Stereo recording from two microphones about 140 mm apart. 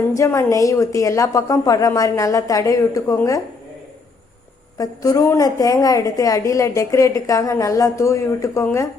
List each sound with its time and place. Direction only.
0.2 s a woman's voice: 20° left (ahead or behind)
4.8 s a woman's voice: 25° left (ahead or behind)